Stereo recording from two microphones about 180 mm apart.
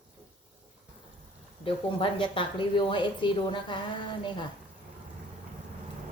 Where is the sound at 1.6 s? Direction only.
30° left (ahead or behind).